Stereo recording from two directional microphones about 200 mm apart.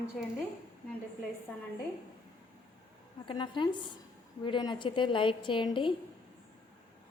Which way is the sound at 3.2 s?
25° left (ahead or behind).